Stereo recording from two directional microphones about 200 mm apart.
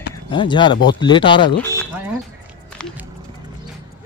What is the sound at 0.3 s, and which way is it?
Speech, 25° left (ahead or behind).